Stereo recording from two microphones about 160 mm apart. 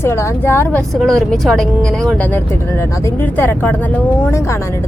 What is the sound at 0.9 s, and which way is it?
A woman's voice, centre (ahead or behind).